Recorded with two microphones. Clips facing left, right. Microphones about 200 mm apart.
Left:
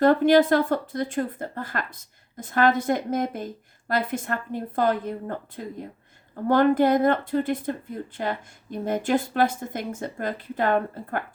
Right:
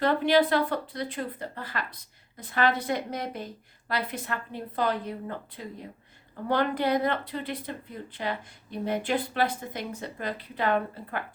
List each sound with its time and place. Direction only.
0.0 s speech: 45° left (ahead or behind)